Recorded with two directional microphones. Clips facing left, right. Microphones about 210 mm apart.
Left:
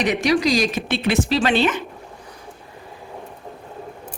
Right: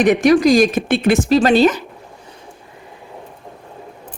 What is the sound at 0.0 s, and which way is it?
Speech, 50° right (ahead or behind).